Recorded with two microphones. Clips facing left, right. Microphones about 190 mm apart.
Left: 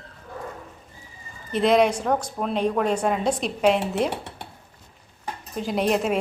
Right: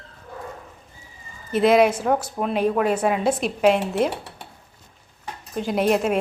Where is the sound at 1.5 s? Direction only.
5° right (ahead or behind).